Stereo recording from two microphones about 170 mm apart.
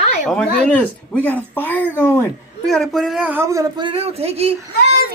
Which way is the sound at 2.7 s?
Centre (ahead or behind).